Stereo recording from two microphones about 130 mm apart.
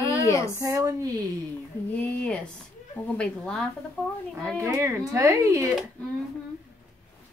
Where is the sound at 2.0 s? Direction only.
10° left (ahead or behind).